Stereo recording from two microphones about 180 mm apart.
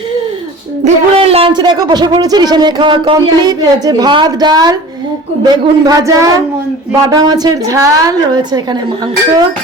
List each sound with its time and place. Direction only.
0.9 s a man's voice: 35° right (ahead or behind)